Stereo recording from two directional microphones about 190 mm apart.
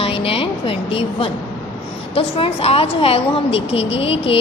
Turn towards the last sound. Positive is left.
turn(degrees=30)  # may be behind; listen again after turning